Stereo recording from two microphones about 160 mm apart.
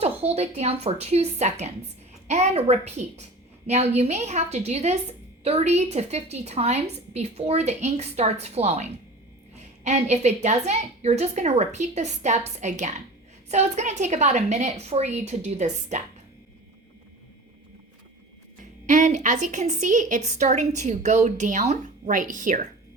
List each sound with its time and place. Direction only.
0.0 s a woman's voice: 40° right (ahead or behind)
18.9 s a woman's voice: 50° right (ahead or behind)